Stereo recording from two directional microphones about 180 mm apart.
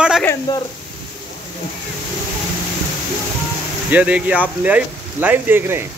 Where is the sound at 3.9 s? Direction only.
5° right (ahead or behind).